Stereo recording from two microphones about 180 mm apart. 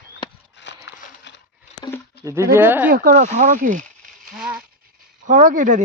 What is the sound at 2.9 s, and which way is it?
Speech, 50° right (ahead or behind).